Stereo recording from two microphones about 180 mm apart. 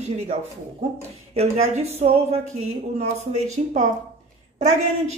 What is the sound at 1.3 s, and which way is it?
A woman's voice, 40° right (ahead or behind).